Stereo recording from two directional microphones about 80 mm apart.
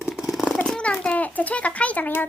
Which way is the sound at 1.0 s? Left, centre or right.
Centre.